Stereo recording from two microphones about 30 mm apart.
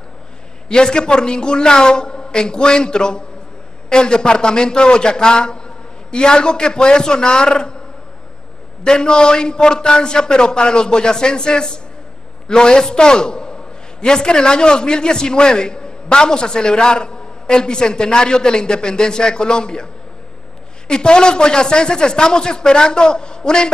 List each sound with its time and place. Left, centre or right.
0.7 s a man's voice: left
8.8 s a man's voice: left